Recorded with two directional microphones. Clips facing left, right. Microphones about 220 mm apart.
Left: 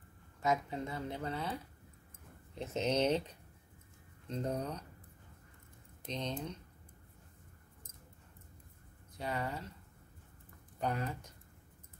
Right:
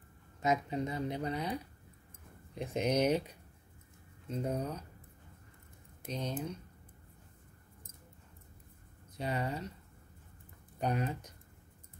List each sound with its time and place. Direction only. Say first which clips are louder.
0.4 s speech: right 2 dB; 20° right (ahead or behind)
6.0 s speech: right 2 dB; 10° right (ahead or behind)
9.2 s speech: right 3 dB; 20° right (ahead or behind)
10.8 s speech: right 3 dB; 20° right (ahead or behind)